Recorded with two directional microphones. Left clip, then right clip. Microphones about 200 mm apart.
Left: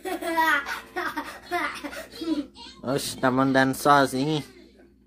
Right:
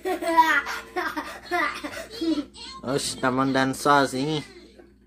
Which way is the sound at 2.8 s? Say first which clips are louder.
Even; 15° left (ahead or behind).